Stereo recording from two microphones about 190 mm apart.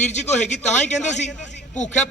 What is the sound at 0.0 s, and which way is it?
A man's voice, 35° left (ahead or behind).